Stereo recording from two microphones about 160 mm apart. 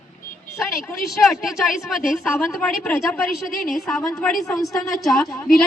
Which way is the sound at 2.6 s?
10° left (ahead or behind).